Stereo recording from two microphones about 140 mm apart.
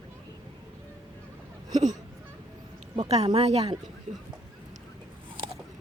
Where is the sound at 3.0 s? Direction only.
50° right (ahead or behind).